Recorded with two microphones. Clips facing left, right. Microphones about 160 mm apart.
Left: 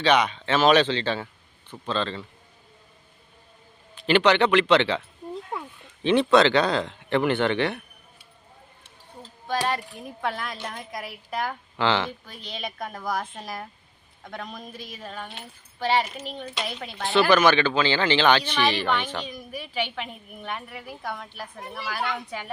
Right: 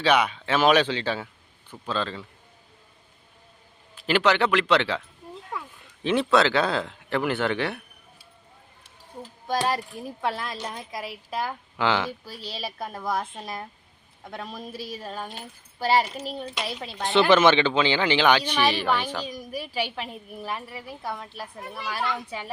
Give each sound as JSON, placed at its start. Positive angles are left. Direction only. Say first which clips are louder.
{"t": 0.0, "sound": "speech", "louder": "left 1 dB", "side_deg": -5}
{"t": 3.9, "sound": "speech", "louder": "left 2 dB", "side_deg": -5}
{"t": 5.3, "sound": "a sound", "louder": "left 3 dB", "side_deg": 25}
{"t": 6.0, "sound": "speech", "louder": "left 3 dB", "side_deg": -5}
{"t": 9.6, "sound": "speech", "louder": "right 1 dB", "side_deg": -35}
{"t": 10.2, "sound": "speech", "louder": "even", "side_deg": 0}
{"t": 12.2, "sound": "speech", "louder": "right 3 dB", "side_deg": -35}
{"t": 13.0, "sound": "speech", "louder": "right 1 dB", "side_deg": 0}
{"t": 14.8, "sound": "speech", "louder": "right 5 dB", "side_deg": -35}
{"t": 16.7, "sound": "speech", "louder": "even", "side_deg": 0}
{"t": 17.0, "sound": "speech", "louder": "right 1 dB", "side_deg": -20}
{"t": 19.5, "sound": "a woman's voice", "louder": "even", "side_deg": -35}
{"t": 21.1, "sound": "speech", "louder": "right 1 dB", "side_deg": 0}